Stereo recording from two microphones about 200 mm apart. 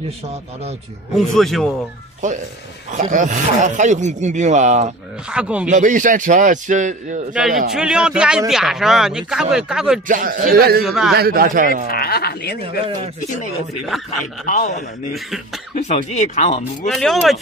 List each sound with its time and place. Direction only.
1.1 s a man's voice: centre (ahead or behind)
2.2 s speech: 40° right (ahead or behind)
5.3 s a man's voice: 5° right (ahead or behind)
5.7 s speech: 40° right (ahead or behind)
7.3 s a man's voice: centre (ahead or behind)
10.0 s speech: 45° right (ahead or behind)
10.8 s a man's voice: centre (ahead or behind)
11.1 s speech: 50° right (ahead or behind)
11.9 s speech: 50° left (ahead or behind)
12.6 s speech: 25° right (ahead or behind)
14.5 s a man's voice: 45° left (ahead or behind)
15.1 s a man's voice: centre (ahead or behind)
15.9 s speech: 35° left (ahead or behind)
16.8 s a man's voice: centre (ahead or behind)